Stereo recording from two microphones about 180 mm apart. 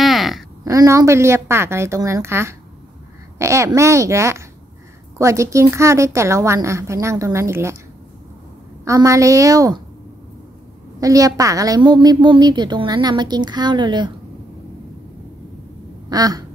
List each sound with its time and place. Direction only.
0.0 s a sound: centre (ahead or behind)
0.7 s a woman's voice: 15° right (ahead or behind)
8.8 s a woman's voice: 15° right (ahead or behind)
11.0 s a woman's voice: 20° right (ahead or behind)
16.1 s a woman's voice: 20° right (ahead or behind)